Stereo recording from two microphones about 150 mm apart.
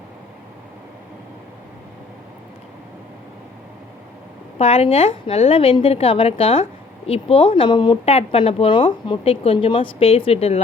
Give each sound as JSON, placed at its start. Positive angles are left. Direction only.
{"t": 4.5, "sound": "speech", "side_deg": 40}